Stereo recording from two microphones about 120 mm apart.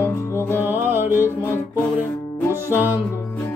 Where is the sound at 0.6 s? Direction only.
20° right (ahead or behind).